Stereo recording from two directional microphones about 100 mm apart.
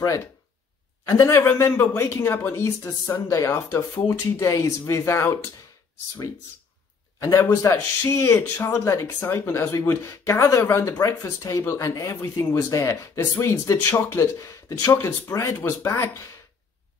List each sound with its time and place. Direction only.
1.0 s a man's voice: 30° left (ahead or behind)
1.5 s speech: 20° left (ahead or behind)
7.2 s speech: 25° left (ahead or behind)